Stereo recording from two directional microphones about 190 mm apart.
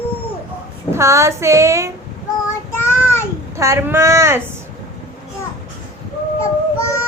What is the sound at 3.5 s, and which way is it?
Speech, 15° right (ahead or behind).